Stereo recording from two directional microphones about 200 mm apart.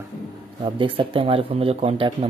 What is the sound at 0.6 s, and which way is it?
Speech, 25° right (ahead or behind).